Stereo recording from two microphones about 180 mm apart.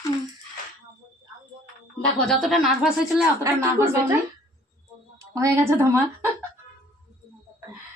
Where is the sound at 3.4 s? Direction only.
15° right (ahead or behind).